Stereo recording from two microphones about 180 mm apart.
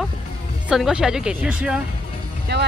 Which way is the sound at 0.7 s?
5° right (ahead or behind).